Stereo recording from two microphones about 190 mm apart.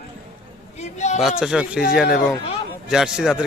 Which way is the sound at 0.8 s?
35° left (ahead or behind).